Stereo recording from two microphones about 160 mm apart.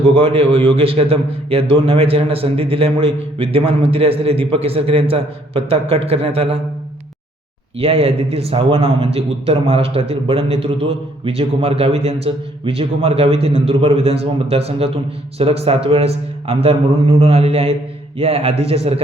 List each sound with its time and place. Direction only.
0.1 s a man's voice: 35° right (ahead or behind)
7.8 s a man's voice: 40° right (ahead or behind)